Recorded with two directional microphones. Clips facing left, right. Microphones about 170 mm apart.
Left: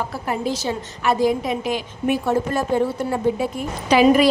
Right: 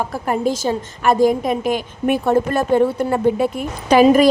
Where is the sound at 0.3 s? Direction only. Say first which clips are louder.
Right 5 dB; 45° right (ahead or behind).